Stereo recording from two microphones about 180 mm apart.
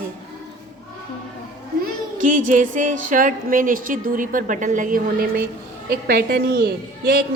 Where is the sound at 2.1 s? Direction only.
45° right (ahead or behind).